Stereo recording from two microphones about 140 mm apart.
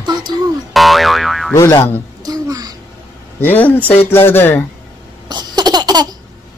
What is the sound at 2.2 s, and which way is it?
Babbling, 25° right (ahead or behind).